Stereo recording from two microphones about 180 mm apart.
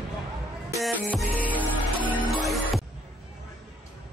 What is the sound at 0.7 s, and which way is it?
Music, centre (ahead or behind).